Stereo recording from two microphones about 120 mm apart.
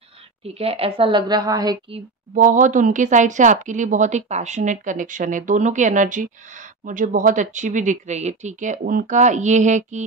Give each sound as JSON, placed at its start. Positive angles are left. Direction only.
{"t": 0.6, "sound": "a woman's voice", "side_deg": -55}
{"t": 1.2, "sound": "a woman's voice", "side_deg": -30}
{"t": 2.3, "sound": "speech", "side_deg": -90}